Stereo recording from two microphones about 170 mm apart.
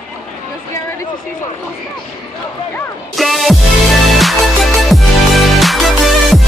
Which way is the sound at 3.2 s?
Centre (ahead or behind).